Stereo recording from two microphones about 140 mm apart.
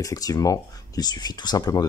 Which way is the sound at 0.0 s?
25° left (ahead or behind).